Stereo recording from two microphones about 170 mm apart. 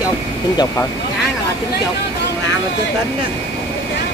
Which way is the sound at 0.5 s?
25° left (ahead or behind).